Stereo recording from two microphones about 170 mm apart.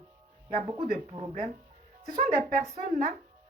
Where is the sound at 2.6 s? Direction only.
40° right (ahead or behind).